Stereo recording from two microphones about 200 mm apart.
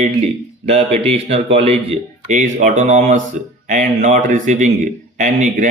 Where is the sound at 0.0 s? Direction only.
30° right (ahead or behind).